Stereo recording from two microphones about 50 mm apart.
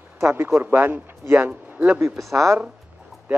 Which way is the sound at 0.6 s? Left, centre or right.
Right.